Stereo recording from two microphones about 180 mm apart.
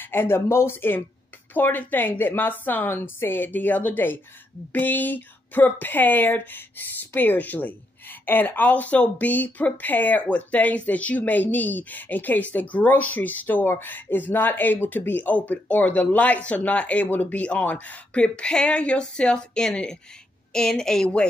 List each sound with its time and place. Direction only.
0.0 s a woman's voice: 10° left (ahead or behind)